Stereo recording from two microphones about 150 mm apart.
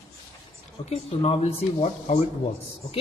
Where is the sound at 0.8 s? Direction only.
40° left (ahead or behind).